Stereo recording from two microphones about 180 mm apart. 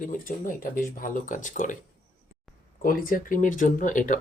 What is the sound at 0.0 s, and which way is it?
Speech, 50° left (ahead or behind).